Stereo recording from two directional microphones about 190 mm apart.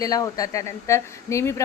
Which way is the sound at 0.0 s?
20° left (ahead or behind).